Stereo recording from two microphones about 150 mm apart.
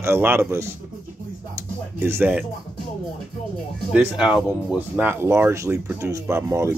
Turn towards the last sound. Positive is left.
turn(degrees=-20)  # may be behind; listen again after turning